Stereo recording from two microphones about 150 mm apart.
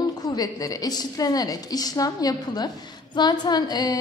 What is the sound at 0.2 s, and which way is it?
A woman's voice, 25° left (ahead or behind).